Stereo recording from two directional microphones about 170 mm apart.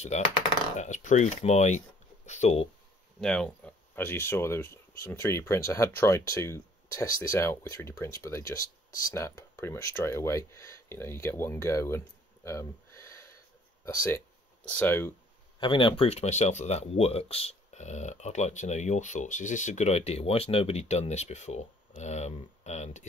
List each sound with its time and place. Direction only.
0.1 s speech: 40° left (ahead or behind)
3.2 s speech: 5° left (ahead or behind)
8.5 s speech: 55° left (ahead or behind)
9.1 s speech: 15° left (ahead or behind)
12.4 s a sound: 15° left (ahead or behind)
13.8 s speech: 15° left (ahead or behind)
15.6 s speech: 30° left (ahead or behind)